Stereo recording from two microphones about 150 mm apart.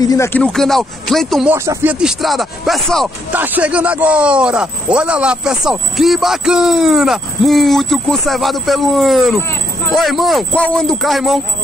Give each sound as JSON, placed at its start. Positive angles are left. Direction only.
{"t": 0.0, "sound": "speech", "side_deg": 25}
{"t": 0.3, "sound": "speech", "side_deg": 5}
{"t": 1.5, "sound": "speech", "side_deg": -15}
{"t": 3.3, "sound": "speech", "side_deg": -10}